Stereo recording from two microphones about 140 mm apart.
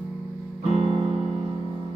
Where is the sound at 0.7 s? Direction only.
35° right (ahead or behind).